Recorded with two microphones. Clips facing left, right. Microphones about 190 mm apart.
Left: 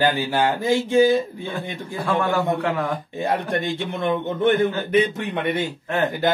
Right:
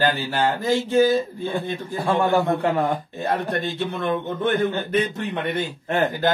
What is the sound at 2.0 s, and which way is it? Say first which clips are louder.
Speech: right 2 dB; centre (ahead or behind).